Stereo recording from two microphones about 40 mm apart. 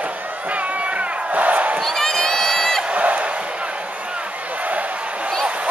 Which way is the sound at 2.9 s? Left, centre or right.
Right.